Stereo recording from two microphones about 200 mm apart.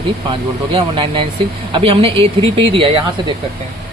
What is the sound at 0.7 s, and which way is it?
Speech, 25° right (ahead or behind).